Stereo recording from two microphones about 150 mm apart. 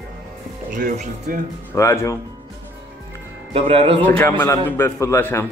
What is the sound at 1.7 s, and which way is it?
Speech, 15° left (ahead or behind).